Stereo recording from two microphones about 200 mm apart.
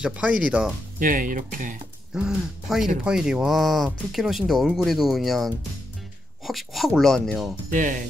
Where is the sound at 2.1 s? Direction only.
5° right (ahead or behind).